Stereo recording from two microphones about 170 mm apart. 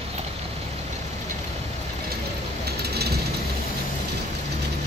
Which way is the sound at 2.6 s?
70° right (ahead or behind).